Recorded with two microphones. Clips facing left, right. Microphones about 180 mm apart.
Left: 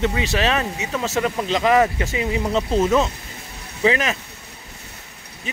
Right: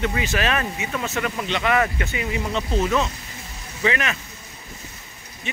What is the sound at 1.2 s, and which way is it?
Speech, 30° left (ahead or behind).